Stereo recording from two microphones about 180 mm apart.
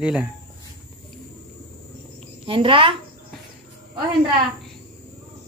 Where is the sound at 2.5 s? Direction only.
30° right (ahead or behind).